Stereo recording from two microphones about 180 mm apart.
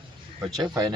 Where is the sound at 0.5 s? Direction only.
20° right (ahead or behind).